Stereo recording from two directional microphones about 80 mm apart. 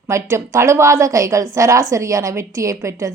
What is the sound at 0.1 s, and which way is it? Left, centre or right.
A woman's voice, right.